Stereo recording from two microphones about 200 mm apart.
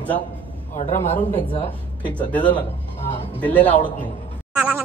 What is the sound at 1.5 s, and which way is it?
Speech, 25° left (ahead or behind).